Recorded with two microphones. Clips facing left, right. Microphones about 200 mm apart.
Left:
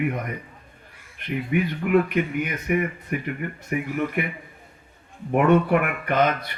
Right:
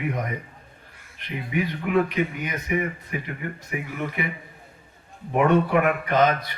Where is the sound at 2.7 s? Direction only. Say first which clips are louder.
Left 2 dB; 55° left (ahead or behind).